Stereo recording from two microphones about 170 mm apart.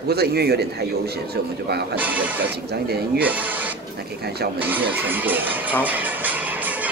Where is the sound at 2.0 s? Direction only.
10° right (ahead or behind).